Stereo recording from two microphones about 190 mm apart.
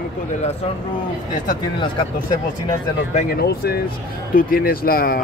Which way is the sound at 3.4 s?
55° left (ahead or behind).